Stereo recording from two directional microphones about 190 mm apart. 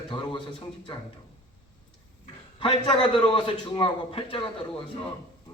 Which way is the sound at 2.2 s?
25° left (ahead or behind).